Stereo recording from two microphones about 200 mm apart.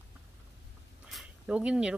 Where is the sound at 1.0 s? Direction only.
5° right (ahead or behind).